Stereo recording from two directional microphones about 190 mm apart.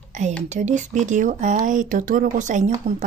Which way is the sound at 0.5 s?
40° right (ahead or behind).